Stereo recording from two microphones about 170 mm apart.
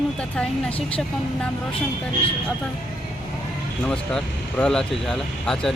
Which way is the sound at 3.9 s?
5° left (ahead or behind).